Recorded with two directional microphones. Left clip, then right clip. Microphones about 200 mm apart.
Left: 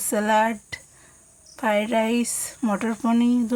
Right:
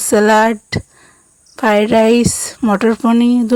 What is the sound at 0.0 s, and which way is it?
Speech, 45° right (ahead or behind).